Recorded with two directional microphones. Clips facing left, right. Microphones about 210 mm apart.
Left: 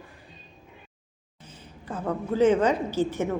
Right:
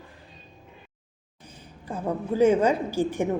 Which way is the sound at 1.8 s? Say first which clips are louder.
Right 1 dB; 10° right (ahead or behind).